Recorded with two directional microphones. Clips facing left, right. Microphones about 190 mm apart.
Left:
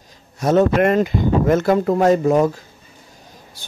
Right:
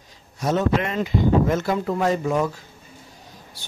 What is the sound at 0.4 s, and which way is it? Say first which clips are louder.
Speech: left 7 dB; 55° left (ahead or behind).